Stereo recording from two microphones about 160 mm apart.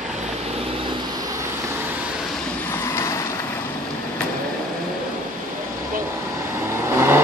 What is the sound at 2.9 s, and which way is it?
Boat, 20° left (ahead or behind).